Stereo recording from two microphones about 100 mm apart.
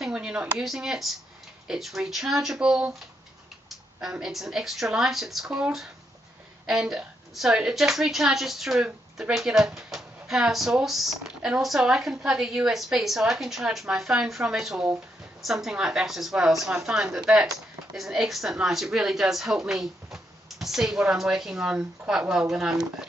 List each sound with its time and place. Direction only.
0.0 s a woman's voice: 10° right (ahead or behind)
4.0 s a woman's voice: 5° right (ahead or behind)